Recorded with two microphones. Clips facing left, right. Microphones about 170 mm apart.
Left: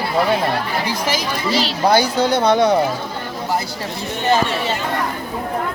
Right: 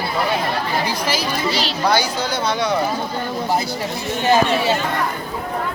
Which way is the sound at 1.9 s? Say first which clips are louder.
Left 6 dB; 55° left (ahead or behind).